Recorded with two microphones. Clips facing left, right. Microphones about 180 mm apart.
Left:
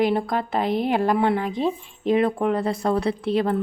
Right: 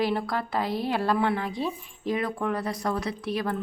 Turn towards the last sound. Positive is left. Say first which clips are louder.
# left 7 dB
turn(degrees=25)  # may be behind; listen again after turning